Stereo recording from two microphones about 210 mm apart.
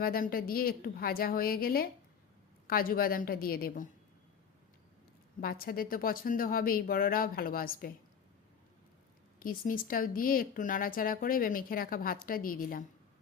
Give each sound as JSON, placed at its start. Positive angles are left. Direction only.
{"t": 0.0, "sound": "speech", "side_deg": 45}
{"t": 5.4, "sound": "speech", "side_deg": 45}
{"t": 9.4, "sound": "speech", "side_deg": 40}